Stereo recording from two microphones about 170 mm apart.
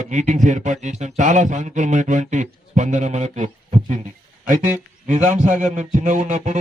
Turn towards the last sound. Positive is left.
turn(degrees=-45)  # may be behind; listen again after turning